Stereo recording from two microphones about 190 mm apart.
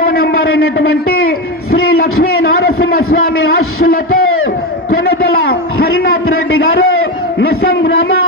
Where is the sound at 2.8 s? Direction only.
90° left.